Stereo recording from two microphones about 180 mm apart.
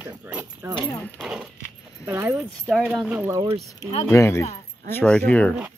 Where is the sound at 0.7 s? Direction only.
10° left (ahead or behind).